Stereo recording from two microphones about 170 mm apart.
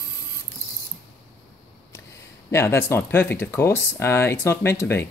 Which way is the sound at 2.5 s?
15° left (ahead or behind).